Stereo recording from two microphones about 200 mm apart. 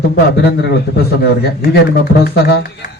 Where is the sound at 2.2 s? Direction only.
55° left (ahead or behind).